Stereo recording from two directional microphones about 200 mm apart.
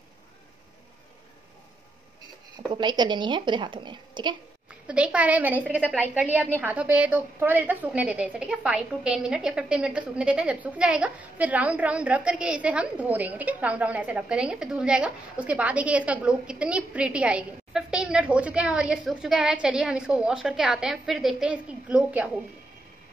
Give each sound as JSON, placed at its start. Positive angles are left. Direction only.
{"t": 2.7, "sound": "a woman's voice", "side_deg": -20}
{"t": 4.8, "sound": "a woman's voice", "side_deg": -5}